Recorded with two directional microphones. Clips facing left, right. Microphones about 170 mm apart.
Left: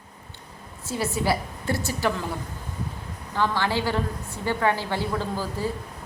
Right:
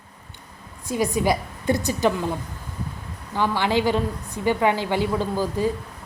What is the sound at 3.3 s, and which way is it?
A woman's voice, 15° right (ahead or behind).